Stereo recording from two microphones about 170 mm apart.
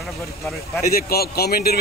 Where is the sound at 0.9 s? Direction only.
65° left (ahead or behind).